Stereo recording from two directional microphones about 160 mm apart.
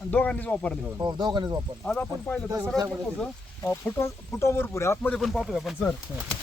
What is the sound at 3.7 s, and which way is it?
Speech, 10° left (ahead or behind).